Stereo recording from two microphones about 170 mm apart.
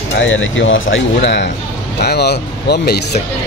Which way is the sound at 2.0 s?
70° left (ahead or behind).